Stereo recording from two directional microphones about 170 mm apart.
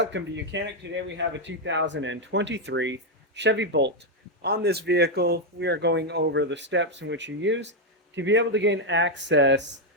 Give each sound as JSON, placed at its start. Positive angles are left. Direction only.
{"t": 0.0, "sound": "speech", "side_deg": -90}
{"t": 4.4, "sound": "speech", "side_deg": -75}